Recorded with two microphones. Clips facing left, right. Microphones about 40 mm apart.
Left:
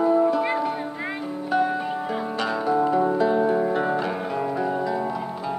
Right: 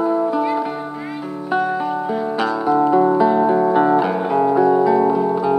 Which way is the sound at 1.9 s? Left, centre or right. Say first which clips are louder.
Right 6 dB; centre.